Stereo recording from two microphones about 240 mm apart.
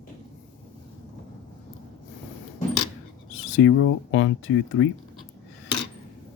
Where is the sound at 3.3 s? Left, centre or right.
Left.